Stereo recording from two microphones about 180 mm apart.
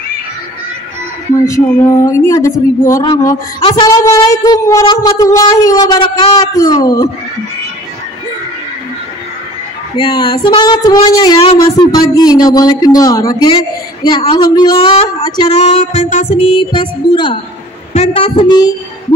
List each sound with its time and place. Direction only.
1.3 s speech: 15° left (ahead or behind)
9.9 s speech: 25° left (ahead or behind)
15.5 s music: 40° left (ahead or behind)